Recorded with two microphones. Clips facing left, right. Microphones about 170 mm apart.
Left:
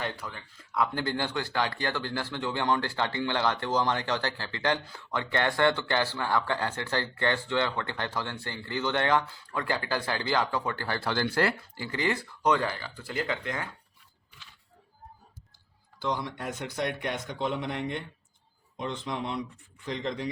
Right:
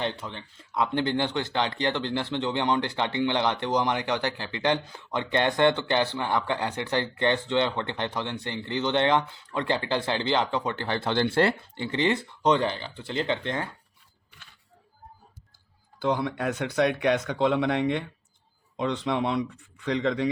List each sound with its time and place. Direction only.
0.0 s speech: 25° right (ahead or behind)
16.0 s speech: 60° right (ahead or behind); by 20.3 s 75° right (ahead or behind)